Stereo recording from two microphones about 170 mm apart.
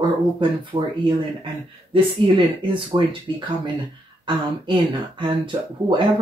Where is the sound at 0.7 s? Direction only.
35° right (ahead or behind).